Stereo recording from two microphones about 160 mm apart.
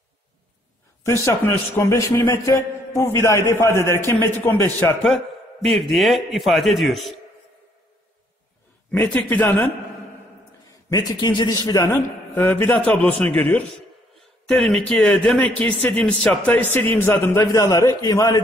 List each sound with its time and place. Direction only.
1.0 s a man's voice: 15° left (ahead or behind); by 7.2 s centre (ahead or behind)
8.9 s speech: 10° left (ahead or behind)
10.9 s a man's voice: 25° left (ahead or behind)